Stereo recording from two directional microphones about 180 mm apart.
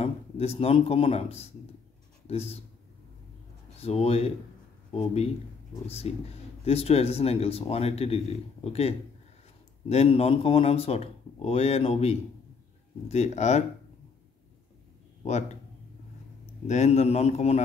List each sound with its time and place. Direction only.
0.0 s speech: 35° left (ahead or behind)
3.8 s speech: 35° left (ahead or behind)
16.6 s speech: 40° left (ahead or behind)